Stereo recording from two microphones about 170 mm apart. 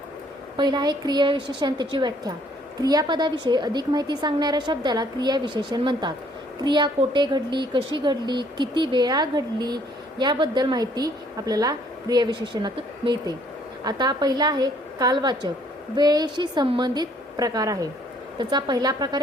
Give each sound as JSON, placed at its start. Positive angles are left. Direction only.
{"t": 0.5, "sound": "speech", "side_deg": -25}